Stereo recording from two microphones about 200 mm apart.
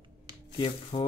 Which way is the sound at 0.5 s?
20° left (ahead or behind).